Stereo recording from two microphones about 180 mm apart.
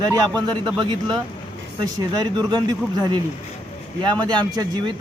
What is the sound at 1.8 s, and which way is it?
A man's voice, 20° right (ahead or behind).